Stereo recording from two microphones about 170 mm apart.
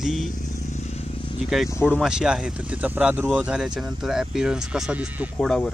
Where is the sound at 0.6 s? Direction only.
40° left (ahead or behind).